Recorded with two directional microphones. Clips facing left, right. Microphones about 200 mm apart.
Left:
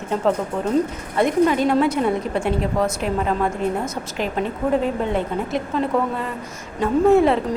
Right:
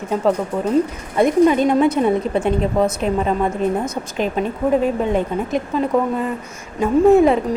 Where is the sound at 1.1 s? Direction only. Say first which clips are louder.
Right 4 dB; 20° right (ahead or behind).